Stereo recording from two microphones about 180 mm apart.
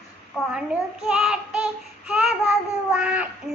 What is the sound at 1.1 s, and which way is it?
Child singing, 5° right (ahead or behind).